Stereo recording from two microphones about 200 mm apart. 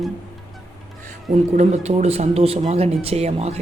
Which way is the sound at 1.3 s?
35° right (ahead or behind).